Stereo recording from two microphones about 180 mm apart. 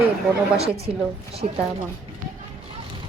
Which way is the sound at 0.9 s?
35° right (ahead or behind).